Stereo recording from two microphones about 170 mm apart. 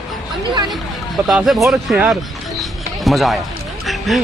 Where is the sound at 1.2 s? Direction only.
Centre (ahead or behind).